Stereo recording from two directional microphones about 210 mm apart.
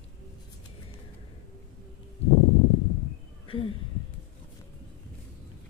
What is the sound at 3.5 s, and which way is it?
Speech, 25° left (ahead or behind).